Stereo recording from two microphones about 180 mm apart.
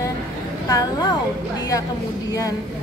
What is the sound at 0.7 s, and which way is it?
Speech, 25° left (ahead or behind).